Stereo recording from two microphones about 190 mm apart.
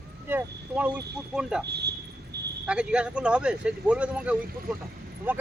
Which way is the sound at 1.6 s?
60° right (ahead or behind).